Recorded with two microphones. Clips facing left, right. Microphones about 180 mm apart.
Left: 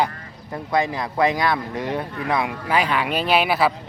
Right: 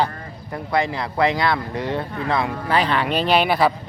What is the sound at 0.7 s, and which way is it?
Speech, 20° left (ahead or behind).